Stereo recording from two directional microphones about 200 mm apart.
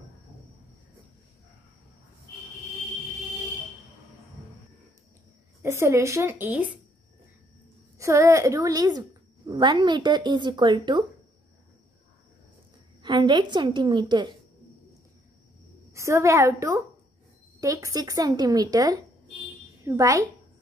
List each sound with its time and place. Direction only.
5.6 s a woman's voice: 15° right (ahead or behind)
8.0 s a woman's voice: 15° right (ahead or behind)
13.0 s speech: 25° right (ahead or behind)
15.9 s a woman's voice: 15° right (ahead or behind)